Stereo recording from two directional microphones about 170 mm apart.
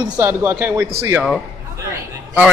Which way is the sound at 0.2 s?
15° right (ahead or behind).